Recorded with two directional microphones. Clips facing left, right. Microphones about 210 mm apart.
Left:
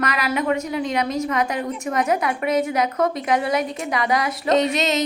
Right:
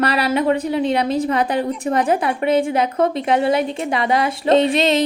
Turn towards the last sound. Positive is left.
turn(degrees=-30)  # may be behind; listen again after turning